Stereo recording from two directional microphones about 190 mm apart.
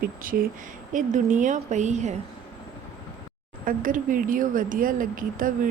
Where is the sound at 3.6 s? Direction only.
45° right (ahead or behind).